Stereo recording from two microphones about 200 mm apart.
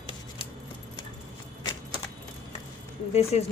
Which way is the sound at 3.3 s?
35° left (ahead or behind).